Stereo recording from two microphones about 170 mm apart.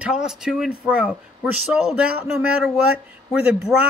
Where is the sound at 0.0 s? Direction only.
5° right (ahead or behind).